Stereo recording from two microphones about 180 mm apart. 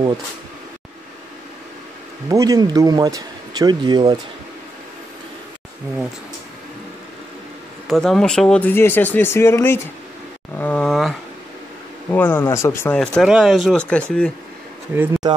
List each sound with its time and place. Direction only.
2.2 s speech: 20° right (ahead or behind)
7.9 s speech: centre (ahead or behind)
12.1 s speech: 10° left (ahead or behind)
15.0 s speech: 20° right (ahead or behind)